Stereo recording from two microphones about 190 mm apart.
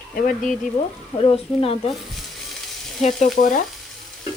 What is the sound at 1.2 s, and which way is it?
Speech, 30° left (ahead or behind).